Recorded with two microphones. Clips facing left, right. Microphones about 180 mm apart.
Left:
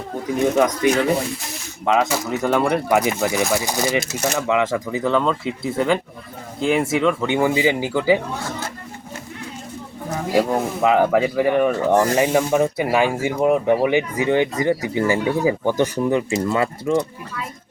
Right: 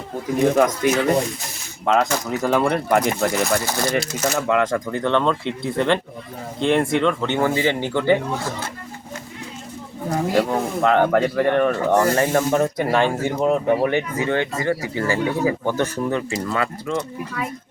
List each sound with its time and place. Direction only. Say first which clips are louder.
0.3 s speech: right 1 dB; centre (ahead or behind)
10.8 s speech: left 1 dB; 5° left (ahead or behind)
16.5 s speech: left 3 dB; 25° left (ahead or behind)